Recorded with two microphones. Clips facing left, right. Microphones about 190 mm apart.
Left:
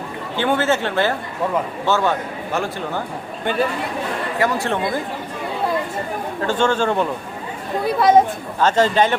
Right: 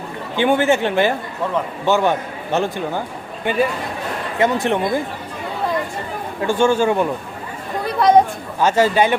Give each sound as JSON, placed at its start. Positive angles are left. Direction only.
{"t": 0.3, "sound": "a man's voice", "side_deg": -15}
{"t": 3.4, "sound": "speech", "side_deg": -10}
{"t": 4.4, "sound": "speech", "side_deg": -20}
{"t": 6.4, "sound": "a man's voice", "side_deg": -10}
{"t": 7.9, "sound": "speech", "side_deg": 0}
{"t": 8.6, "sound": "a man's voice", "side_deg": -10}